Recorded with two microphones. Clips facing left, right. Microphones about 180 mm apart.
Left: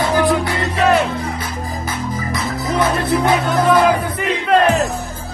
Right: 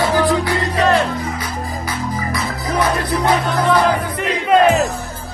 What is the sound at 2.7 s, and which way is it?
Music, 25° left (ahead or behind).